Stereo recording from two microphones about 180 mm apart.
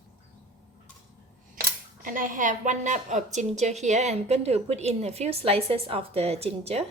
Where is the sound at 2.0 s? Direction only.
50° right (ahead or behind).